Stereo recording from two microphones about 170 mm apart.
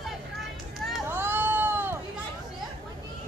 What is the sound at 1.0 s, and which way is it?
Hubbub, 10° right (ahead or behind).